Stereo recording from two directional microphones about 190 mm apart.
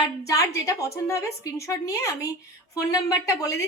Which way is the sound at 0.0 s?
15° left (ahead or behind).